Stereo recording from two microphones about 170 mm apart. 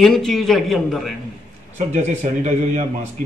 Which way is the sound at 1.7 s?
40° right (ahead or behind).